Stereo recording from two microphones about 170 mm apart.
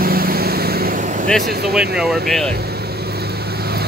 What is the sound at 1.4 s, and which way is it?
Speech, 65° right (ahead or behind).